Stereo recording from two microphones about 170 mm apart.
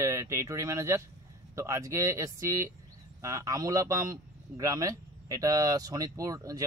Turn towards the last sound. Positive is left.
turn(degrees=-20)  # may be behind; listen again after turning